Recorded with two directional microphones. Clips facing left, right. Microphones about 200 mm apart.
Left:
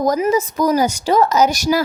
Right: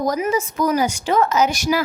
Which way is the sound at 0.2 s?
40° left (ahead or behind).